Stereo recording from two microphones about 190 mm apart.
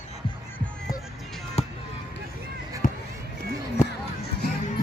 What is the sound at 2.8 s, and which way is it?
Basketball bounce, 45° left (ahead or behind).